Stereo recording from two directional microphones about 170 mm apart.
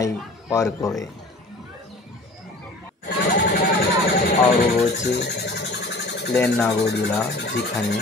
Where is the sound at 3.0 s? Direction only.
70° left (ahead or behind).